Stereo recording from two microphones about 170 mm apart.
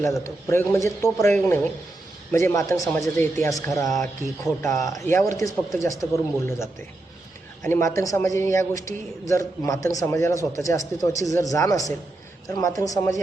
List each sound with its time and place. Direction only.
0.4 s a man's voice: 15° left (ahead or behind)
3.9 s speech: centre (ahead or behind)
4.9 s a man's voice: 15° left (ahead or behind)